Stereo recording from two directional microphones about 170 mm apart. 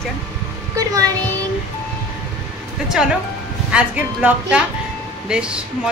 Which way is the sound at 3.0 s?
5° right (ahead or behind).